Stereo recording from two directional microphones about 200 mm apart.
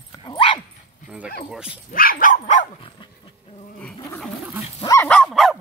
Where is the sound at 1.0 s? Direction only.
5° right (ahead or behind).